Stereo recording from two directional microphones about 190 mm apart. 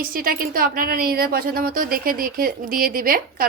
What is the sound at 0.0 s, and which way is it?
Speech, 50° right (ahead or behind).